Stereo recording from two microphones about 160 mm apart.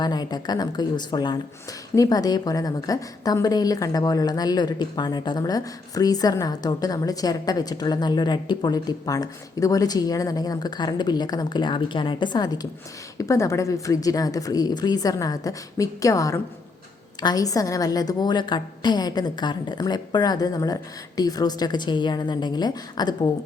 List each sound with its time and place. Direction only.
0.0 s a woman's voice: 25° left (ahead or behind)